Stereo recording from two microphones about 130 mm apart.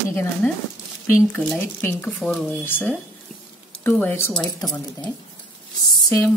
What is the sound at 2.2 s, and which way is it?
A woman's voice, 5° left (ahead or behind).